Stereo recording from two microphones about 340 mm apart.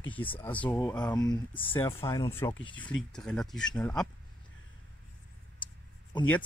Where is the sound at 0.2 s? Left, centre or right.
Centre.